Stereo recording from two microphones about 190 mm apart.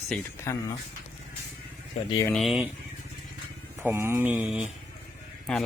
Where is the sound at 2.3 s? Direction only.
Centre (ahead or behind).